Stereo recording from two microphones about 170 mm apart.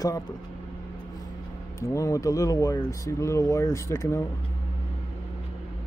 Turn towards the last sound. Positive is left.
turn(degrees=15)  # may be behind; listen again after turning